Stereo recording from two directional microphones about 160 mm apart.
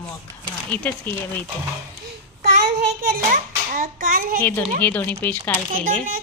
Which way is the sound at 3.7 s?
60° right (ahead or behind).